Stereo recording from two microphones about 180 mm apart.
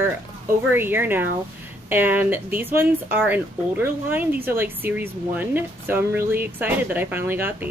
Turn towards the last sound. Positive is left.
turn(degrees=-10)  # may be behind; listen again after turning